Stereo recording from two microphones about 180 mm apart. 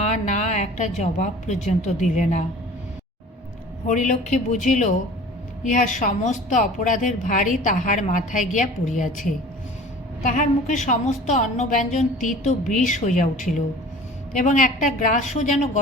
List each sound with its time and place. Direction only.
0.1 s a woman's voice: 40° left (ahead or behind)
3.8 s a woman's voice: 45° left (ahead or behind)
10.2 s a woman's voice: 45° left (ahead or behind)